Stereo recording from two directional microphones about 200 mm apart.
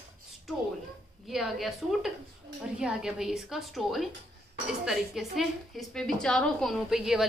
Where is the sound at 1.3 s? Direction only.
Centre (ahead or behind).